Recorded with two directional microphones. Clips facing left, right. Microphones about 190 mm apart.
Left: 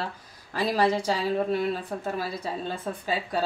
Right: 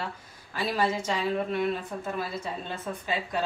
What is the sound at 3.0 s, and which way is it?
Speech, 35° left (ahead or behind).